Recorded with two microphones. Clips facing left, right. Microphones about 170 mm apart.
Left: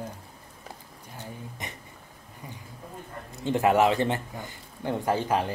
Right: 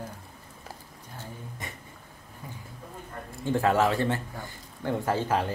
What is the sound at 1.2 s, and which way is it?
Speech, 20° left (ahead or behind).